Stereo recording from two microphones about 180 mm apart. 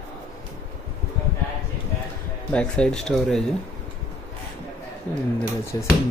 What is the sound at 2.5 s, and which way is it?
Speech, 5° left (ahead or behind).